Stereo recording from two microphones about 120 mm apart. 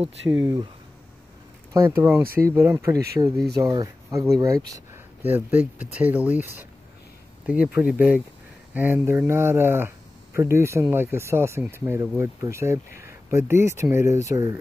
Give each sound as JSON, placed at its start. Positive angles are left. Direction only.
{"t": 0.4, "sound": "speech", "side_deg": -30}
{"t": 1.7, "sound": "speech", "side_deg": -25}
{"t": 5.2, "sound": "speech", "side_deg": -15}